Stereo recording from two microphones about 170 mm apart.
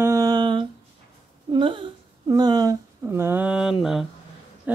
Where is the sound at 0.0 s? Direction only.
20° right (ahead or behind).